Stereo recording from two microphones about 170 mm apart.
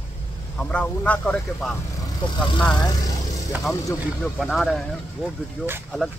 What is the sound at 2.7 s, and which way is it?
Speech, 25° left (ahead or behind).